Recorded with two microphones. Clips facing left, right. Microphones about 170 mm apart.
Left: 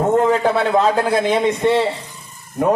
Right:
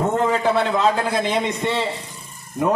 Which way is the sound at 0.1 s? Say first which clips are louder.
Left 4 dB; 45° left (ahead or behind).